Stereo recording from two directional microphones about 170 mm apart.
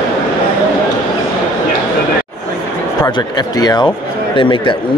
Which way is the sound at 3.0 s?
25° left (ahead or behind).